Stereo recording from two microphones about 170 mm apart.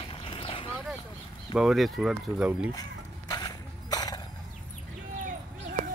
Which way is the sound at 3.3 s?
25° left (ahead or behind).